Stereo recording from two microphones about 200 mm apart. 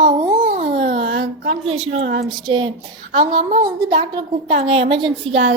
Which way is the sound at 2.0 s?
70° right (ahead or behind).